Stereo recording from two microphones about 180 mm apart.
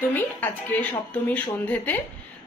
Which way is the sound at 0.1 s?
10° left (ahead or behind).